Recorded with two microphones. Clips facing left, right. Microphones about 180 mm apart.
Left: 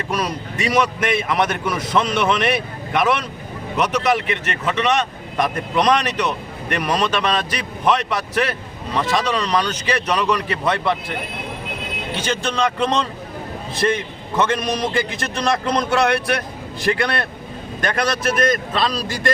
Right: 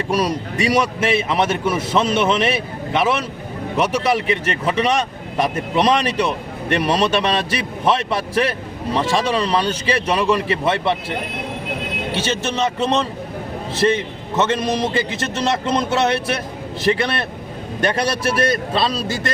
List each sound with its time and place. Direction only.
0.5 s speech: 35° right (ahead or behind)
12.2 s speech: 25° right (ahead or behind)